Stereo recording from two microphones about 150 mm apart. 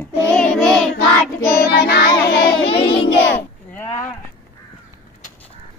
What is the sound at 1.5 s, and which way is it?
Child singing, 90° left.